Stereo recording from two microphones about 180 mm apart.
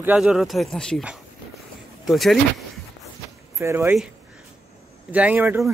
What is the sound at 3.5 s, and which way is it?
Speech, 15° right (ahead or behind).